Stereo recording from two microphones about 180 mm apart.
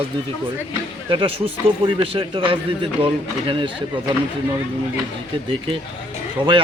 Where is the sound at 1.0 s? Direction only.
30° right (ahead or behind).